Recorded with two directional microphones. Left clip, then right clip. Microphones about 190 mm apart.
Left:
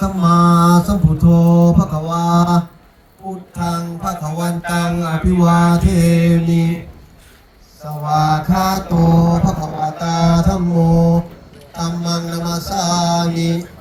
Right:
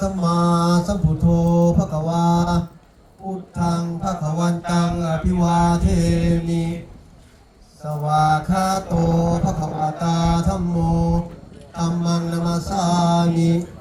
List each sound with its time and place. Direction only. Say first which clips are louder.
0.0 s mantra: left 6 dB; 10° right (ahead or behind)
3.2 s music: left 2 dB; 15° left (ahead or behind)
3.6 s music: left 2 dB; centre (ahead or behind)
5.5 s mantra: left 2 dB; 10° left (ahead or behind)
8.0 s mantra: left 2 dB; 5° left (ahead or behind); by 13.7 s 40° left (ahead or behind)